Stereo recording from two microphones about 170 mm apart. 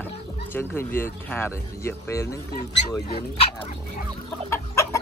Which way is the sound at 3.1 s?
40° left (ahead or behind).